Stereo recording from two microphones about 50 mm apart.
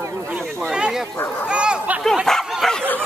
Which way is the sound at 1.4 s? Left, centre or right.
Centre.